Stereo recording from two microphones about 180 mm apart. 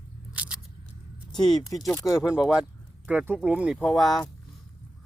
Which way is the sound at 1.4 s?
Centre (ahead or behind).